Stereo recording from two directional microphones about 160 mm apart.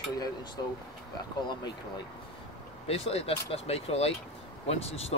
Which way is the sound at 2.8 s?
40° left (ahead or behind).